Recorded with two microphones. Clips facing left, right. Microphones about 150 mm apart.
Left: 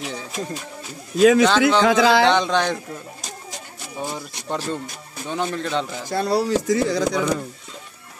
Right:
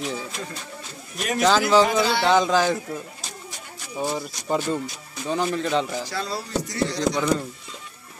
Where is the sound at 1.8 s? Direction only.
90° left.